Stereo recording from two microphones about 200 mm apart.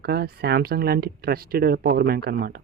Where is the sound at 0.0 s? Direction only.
55° right (ahead or behind).